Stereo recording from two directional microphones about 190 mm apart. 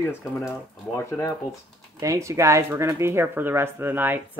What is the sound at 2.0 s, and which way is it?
Speech, 15° right (ahead or behind).